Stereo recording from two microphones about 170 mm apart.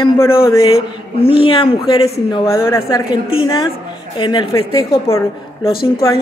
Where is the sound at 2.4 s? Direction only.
15° left (ahead or behind).